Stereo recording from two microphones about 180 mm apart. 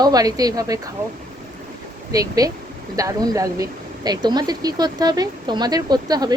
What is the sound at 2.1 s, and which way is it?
Speech, 20° right (ahead or behind).